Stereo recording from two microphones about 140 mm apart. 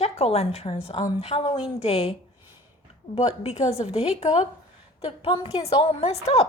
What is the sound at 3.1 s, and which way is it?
A woman's voice, 50° left (ahead or behind).